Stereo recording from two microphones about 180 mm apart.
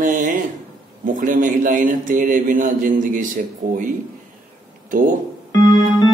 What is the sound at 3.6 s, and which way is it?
Speech, 40° right (ahead or behind).